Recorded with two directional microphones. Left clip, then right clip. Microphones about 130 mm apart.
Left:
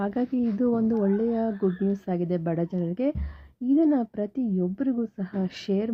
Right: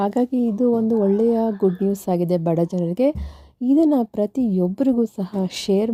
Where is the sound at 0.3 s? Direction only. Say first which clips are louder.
Right 6 dB; 20° right (ahead or behind).